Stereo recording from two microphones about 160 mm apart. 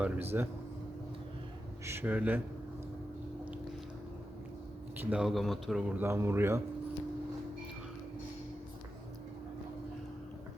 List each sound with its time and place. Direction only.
0.0 s speech: 15° right (ahead or behind)
1.8 s speech: 15° right (ahead or behind)
4.9 s speech: 5° right (ahead or behind)
6.0 s speech: 15° right (ahead or behind)